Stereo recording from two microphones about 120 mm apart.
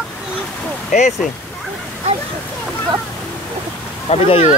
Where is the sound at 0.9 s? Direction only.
90° left.